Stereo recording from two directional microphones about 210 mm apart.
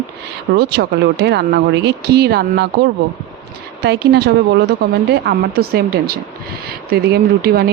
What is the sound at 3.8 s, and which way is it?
Speech, 50° right (ahead or behind).